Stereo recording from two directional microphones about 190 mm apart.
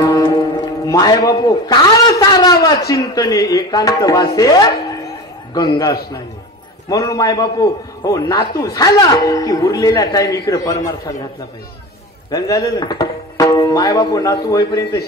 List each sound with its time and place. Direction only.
0.0 s music: 20° left (ahead or behind)
2.9 s a man's voice: 20° left (ahead or behind)
12.3 s speech: 20° left (ahead or behind)